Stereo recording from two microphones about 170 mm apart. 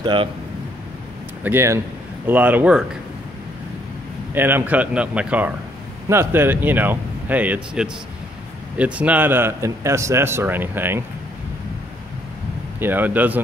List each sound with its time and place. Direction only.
0.0 s speech: 30° right (ahead or behind)
1.4 s a man's voice: 15° right (ahead or behind)
4.3 s a man's voice: 10° right (ahead or behind)
12.7 s a man's voice: 10° right (ahead or behind)